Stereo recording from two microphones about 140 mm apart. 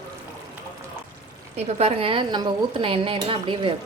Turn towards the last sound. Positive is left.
turn(degrees=-40)  # may be behind; listen again after turning